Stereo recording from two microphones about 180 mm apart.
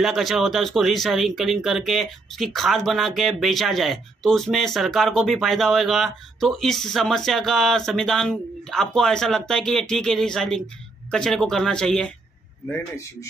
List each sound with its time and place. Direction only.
0.0 s speech: centre (ahead or behind)
12.6 s speech: 15° left (ahead or behind)